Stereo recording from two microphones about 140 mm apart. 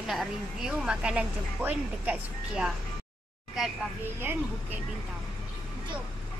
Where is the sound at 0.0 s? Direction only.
Centre (ahead or behind).